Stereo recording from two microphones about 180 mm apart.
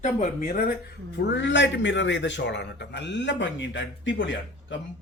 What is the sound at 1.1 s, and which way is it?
A man's voice, 80° left.